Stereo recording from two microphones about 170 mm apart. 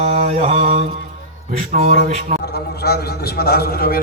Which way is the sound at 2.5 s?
70° left (ahead or behind).